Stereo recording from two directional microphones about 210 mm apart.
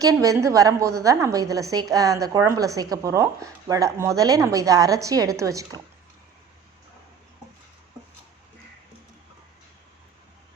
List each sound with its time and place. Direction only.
0.0 s a woman's voice: 15° right (ahead or behind)